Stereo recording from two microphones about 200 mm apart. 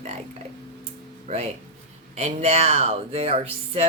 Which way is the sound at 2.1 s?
30° right (ahead or behind).